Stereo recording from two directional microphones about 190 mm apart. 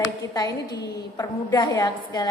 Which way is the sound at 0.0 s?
20° left (ahead or behind).